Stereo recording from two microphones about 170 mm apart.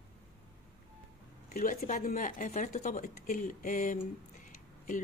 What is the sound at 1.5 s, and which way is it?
A woman's voice, 55° left (ahead or behind).